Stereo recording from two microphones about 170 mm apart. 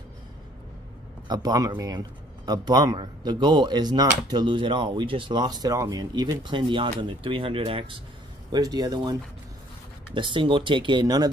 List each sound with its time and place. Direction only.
1.2 s speech: 25° right (ahead or behind)
10.1 s speech: 30° right (ahead or behind)